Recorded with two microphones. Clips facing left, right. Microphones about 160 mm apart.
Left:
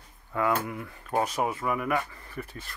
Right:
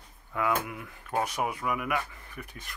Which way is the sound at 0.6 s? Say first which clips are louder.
Left 2 dB; 30° left (ahead or behind).